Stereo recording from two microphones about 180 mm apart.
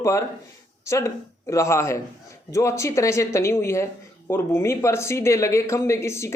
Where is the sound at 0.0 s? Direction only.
15° left (ahead or behind).